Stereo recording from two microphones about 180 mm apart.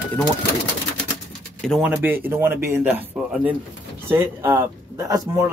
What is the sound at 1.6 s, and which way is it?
Speech, centre (ahead or behind).